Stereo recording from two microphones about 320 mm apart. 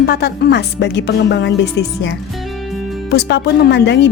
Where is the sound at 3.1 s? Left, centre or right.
Left.